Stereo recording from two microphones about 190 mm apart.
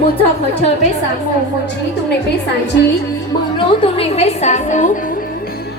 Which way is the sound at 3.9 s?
35° left (ahead or behind).